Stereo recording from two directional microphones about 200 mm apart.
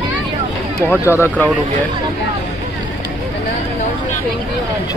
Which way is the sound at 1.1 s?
10° left (ahead or behind).